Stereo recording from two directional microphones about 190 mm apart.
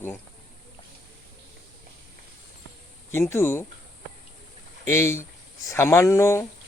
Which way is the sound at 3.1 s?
15° left (ahead or behind).